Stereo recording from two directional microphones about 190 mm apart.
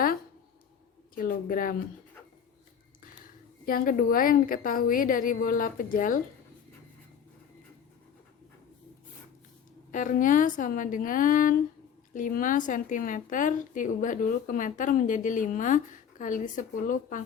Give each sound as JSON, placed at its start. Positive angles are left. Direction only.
{"t": 1.1, "sound": "speech", "side_deg": 50}
{"t": 3.7, "sound": "speech", "side_deg": 45}
{"t": 9.9, "sound": "speech", "side_deg": 45}